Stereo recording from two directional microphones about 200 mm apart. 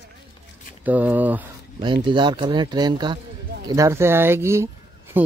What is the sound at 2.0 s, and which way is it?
Speech, 25° right (ahead or behind).